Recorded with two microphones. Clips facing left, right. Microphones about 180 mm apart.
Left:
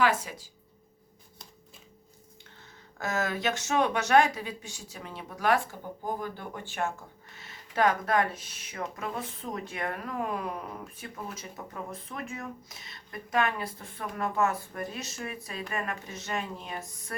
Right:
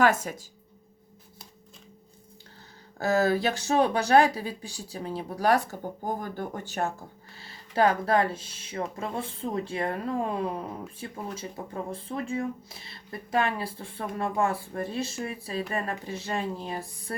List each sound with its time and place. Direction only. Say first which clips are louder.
0.0 s speech: right 3 dB; 45° right (ahead or behind)
3.0 s speech: right 7 dB; 35° right (ahead or behind)